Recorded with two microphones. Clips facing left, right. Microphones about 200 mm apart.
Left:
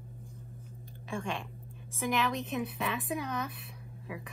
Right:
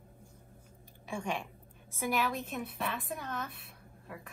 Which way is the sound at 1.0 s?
15° right (ahead or behind).